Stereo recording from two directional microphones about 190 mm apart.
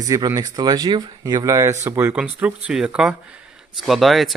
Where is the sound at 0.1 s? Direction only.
20° right (ahead or behind).